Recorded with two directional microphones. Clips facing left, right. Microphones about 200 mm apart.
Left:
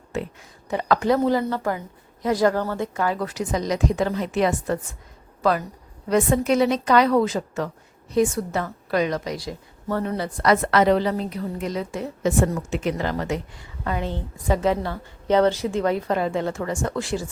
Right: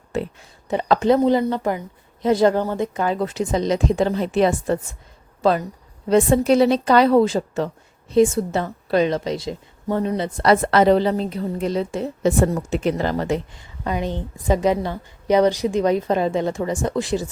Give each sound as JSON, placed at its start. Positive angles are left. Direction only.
{"t": 0.1, "sound": "a woman's voice", "side_deg": -35}
{"t": 13.8, "sound": "a woman's voice", "side_deg": -15}